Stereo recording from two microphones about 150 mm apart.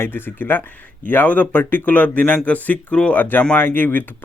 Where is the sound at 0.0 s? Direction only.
15° left (ahead or behind).